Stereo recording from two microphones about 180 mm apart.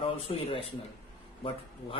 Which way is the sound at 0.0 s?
30° left (ahead or behind).